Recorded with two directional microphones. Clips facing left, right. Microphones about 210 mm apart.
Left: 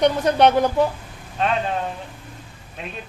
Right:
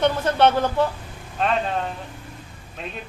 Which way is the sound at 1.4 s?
Centre (ahead or behind).